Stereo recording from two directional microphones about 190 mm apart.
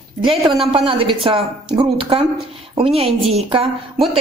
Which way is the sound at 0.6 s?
30° right (ahead or behind).